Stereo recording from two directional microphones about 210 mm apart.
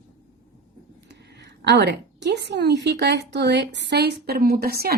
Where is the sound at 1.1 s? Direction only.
50° right (ahead or behind).